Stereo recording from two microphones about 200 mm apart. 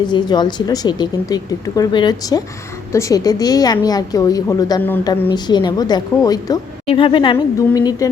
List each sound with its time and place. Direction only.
0.0 s a woman's voice: 20° left (ahead or behind)
5.3 s a woman's voice: 20° left (ahead or behind)